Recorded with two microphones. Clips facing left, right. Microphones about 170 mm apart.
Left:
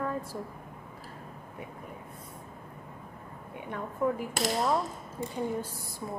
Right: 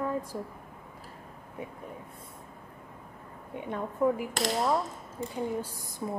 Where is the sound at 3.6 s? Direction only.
20° right (ahead or behind).